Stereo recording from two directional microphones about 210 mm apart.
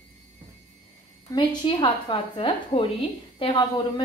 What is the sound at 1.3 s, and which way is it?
A woman's voice, 20° left (ahead or behind).